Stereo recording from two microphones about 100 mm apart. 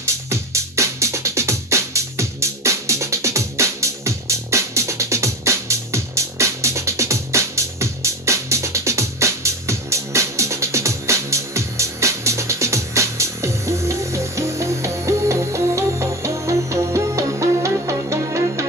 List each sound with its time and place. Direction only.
0.0 s music: 30° right (ahead or behind)